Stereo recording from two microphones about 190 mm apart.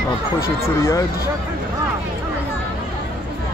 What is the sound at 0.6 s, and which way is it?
Speech, 15° left (ahead or behind).